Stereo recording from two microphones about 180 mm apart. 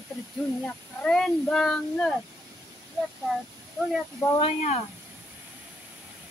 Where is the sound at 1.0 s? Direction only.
5° left (ahead or behind).